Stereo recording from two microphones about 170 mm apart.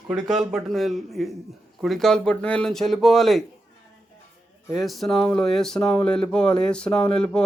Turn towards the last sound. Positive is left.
turn(degrees=5)  # may be behind; listen again after turning